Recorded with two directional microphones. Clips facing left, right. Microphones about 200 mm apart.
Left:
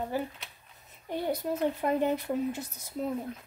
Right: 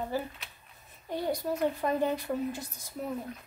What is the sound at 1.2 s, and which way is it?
A child's voice, 20° left (ahead or behind).